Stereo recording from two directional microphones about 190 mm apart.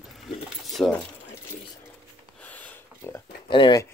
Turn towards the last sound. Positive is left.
turn(degrees=20)  # may be behind; listen again after turning